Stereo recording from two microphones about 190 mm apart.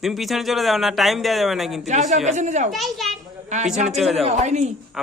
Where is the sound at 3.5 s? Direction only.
35° right (ahead or behind).